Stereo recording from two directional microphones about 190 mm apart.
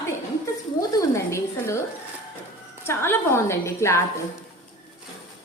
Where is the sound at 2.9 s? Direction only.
15° left (ahead or behind).